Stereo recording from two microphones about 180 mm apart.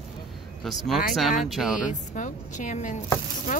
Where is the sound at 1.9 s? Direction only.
45° left (ahead or behind).